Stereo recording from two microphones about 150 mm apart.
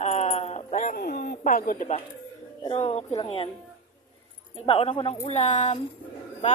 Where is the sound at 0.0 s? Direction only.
45° left (ahead or behind); by 2.0 s 65° left (ahead or behind).